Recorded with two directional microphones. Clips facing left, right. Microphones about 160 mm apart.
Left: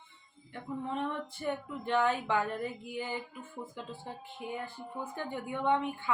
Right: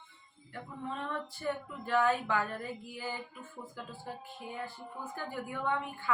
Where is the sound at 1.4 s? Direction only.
20° left (ahead or behind).